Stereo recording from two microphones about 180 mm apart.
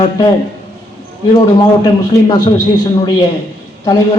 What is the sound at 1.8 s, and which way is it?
A man's voice, 25° left (ahead or behind).